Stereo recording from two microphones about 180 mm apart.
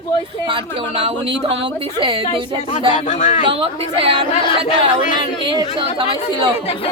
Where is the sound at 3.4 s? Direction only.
30° right (ahead or behind).